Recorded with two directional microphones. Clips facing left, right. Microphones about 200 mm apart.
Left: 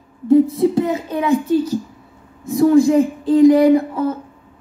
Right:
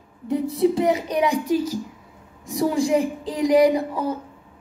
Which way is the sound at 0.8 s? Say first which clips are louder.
Left 2 dB; 15° right (ahead or behind).